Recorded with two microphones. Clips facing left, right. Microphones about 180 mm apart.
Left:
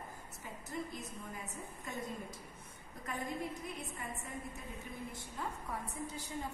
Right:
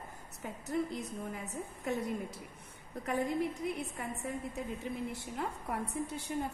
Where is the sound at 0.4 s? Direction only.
70° right (ahead or behind).